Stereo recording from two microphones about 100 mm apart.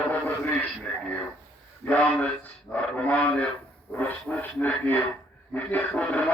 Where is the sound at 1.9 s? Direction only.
15° left (ahead or behind).